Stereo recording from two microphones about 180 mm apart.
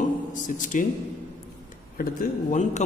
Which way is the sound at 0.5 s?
45° left (ahead or behind).